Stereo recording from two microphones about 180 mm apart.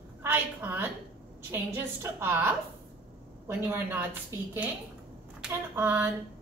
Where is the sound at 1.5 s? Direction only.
10° right (ahead or behind).